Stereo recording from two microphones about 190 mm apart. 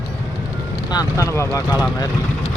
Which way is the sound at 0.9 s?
15° left (ahead or behind).